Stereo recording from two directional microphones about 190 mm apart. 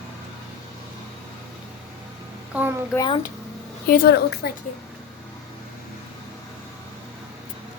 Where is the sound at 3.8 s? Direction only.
50° left (ahead or behind).